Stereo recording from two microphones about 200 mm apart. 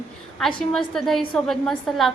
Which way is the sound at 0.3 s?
Centre (ahead or behind).